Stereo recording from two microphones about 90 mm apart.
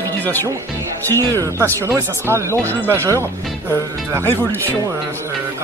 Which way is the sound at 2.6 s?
20° left (ahead or behind).